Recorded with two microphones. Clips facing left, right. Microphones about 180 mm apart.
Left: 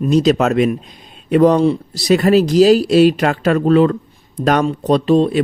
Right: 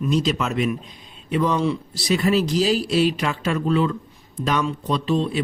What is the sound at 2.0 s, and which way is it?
Speech, 70° left (ahead or behind).